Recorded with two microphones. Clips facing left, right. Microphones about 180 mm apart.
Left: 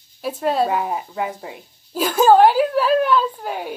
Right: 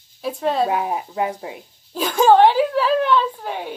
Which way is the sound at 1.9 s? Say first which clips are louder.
Left 1 dB; 5° left (ahead or behind).